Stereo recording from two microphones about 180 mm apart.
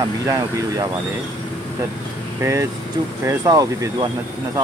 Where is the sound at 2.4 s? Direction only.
15° right (ahead or behind).